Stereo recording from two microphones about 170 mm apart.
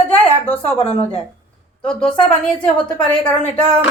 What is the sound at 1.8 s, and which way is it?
Speech, 5° left (ahead or behind).